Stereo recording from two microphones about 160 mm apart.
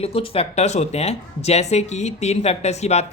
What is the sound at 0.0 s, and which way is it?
Speech, 35° left (ahead or behind).